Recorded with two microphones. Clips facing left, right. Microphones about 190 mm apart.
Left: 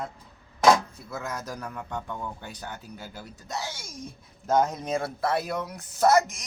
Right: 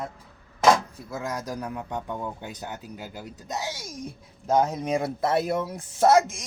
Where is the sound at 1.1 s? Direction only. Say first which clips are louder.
Right 4 dB; 15° right (ahead or behind).